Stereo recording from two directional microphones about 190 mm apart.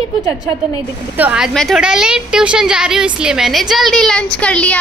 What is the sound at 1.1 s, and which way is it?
A woman's voice, 5° right (ahead or behind).